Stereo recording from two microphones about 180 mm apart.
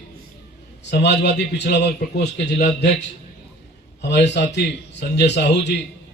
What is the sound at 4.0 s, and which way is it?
A man's voice, 70° left (ahead or behind).